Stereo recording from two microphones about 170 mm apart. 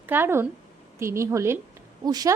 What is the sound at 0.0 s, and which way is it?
A woman's voice, 10° right (ahead or behind).